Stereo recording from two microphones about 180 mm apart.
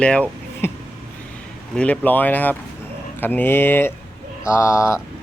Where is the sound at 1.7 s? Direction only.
5° left (ahead or behind).